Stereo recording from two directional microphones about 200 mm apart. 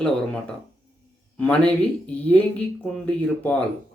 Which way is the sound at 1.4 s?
5° left (ahead or behind).